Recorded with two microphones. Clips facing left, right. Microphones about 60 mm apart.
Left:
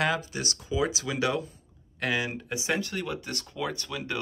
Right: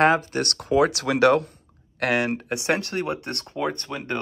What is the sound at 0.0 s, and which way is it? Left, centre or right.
Speech, right.